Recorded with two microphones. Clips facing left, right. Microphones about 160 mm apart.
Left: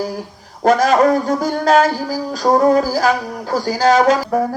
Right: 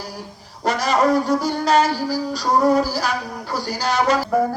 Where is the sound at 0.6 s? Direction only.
50° left (ahead or behind).